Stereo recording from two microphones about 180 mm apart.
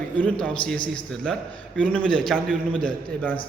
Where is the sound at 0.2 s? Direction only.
5° left (ahead or behind).